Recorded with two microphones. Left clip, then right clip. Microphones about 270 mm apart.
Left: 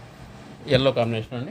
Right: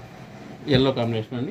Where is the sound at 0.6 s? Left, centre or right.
Left.